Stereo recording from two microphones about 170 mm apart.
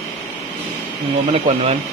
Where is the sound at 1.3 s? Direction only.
40° right (ahead or behind).